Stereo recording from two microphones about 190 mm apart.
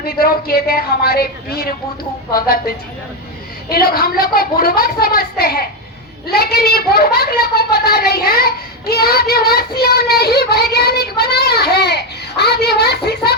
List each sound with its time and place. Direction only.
0.0 s a woman's voice: 50° left (ahead or behind)